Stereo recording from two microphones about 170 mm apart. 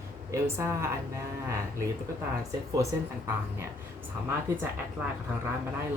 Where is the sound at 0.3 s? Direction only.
15° right (ahead or behind).